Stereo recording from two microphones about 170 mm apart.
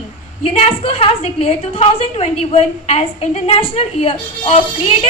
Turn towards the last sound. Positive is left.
turn(degrees=35)  # may be behind; listen again after turning